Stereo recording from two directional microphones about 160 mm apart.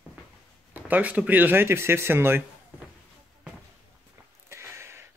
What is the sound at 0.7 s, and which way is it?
Speech, 10° right (ahead or behind).